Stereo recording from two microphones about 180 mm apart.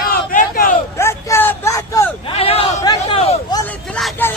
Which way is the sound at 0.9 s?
15° left (ahead or behind).